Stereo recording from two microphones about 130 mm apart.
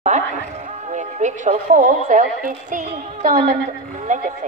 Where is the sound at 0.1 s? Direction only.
65° right (ahead or behind).